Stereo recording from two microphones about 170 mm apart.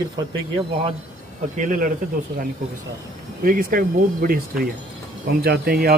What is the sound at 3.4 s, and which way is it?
Speech, 55° right (ahead or behind).